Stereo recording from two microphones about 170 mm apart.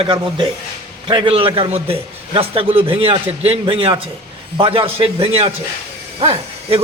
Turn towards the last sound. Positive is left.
turn(degrees=-35)  # may be behind; listen again after turning